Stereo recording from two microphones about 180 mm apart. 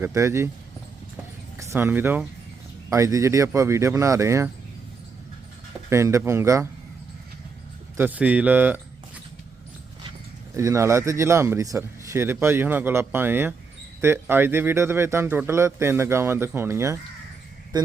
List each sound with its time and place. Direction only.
0.0 s speech: 15° right (ahead or behind)
1.5 s speech: 15° right (ahead or behind)
5.9 s speech: 15° right (ahead or behind)
7.9 s speech: 10° right (ahead or behind)
10.5 s speech: 15° right (ahead or behind)